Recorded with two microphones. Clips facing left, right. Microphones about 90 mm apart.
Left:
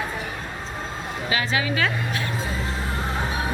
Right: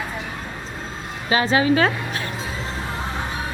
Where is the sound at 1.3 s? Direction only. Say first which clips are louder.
Right 8 dB; 35° right (ahead or behind).